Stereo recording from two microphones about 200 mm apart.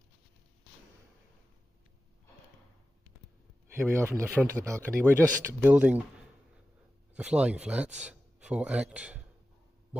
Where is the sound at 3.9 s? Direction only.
15° right (ahead or behind).